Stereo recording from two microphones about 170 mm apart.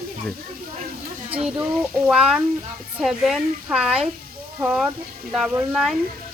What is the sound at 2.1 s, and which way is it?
Speech, 5° right (ahead or behind).